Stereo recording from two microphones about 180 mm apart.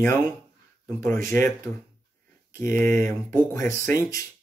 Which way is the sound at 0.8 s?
10° left (ahead or behind).